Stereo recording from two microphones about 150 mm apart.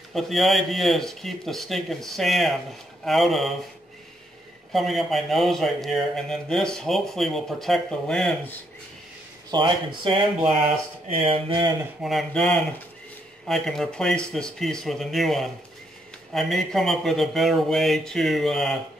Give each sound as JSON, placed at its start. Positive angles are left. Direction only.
{"t": 0.1, "sound": "a man's voice", "side_deg": 0}
{"t": 4.7, "sound": "a man's voice", "side_deg": 0}
{"t": 9.5, "sound": "speech", "side_deg": -30}
{"t": 12.0, "sound": "a man's voice", "side_deg": 0}